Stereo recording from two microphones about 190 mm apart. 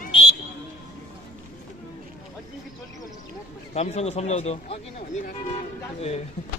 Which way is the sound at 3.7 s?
35° left (ahead or behind).